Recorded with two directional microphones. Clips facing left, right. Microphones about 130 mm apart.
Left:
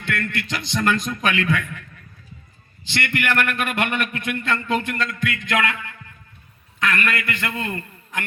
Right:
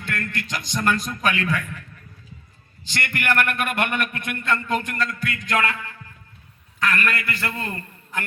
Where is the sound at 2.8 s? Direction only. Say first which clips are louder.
Left 2 dB; 45° right (ahead or behind).